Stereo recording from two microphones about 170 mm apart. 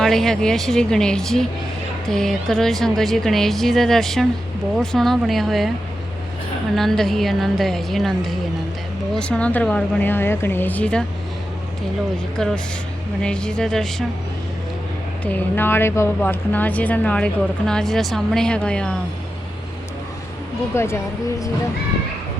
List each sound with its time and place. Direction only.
0.0 s a woman's voice: centre (ahead or behind)
6.7 s a woman's voice: centre (ahead or behind)
12.1 s a woman's voice: 5° left (ahead or behind)
15.2 s speech: 10° left (ahead or behind)
20.7 s speech: 15° left (ahead or behind)